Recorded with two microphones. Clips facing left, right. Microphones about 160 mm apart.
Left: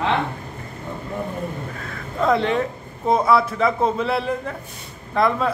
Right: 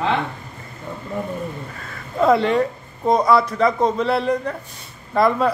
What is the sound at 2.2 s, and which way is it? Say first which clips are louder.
Speech: right 3 dB; centre (ahead or behind).